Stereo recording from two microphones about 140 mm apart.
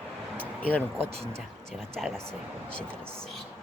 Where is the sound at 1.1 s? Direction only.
45° right (ahead or behind).